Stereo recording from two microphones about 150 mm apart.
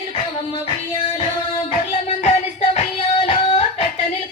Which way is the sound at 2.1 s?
45° left (ahead or behind).